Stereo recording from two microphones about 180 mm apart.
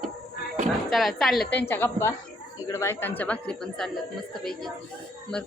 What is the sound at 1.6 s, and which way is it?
Speech, 15° left (ahead or behind).